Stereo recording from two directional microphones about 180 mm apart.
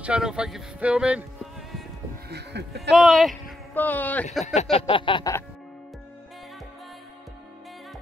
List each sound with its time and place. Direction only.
0.0 s speech: 5° right (ahead or behind)
2.2 s speech: 65° right (ahead or behind)
2.9 s speech: centre (ahead or behind)
4.6 s a sound: 35° left (ahead or behind)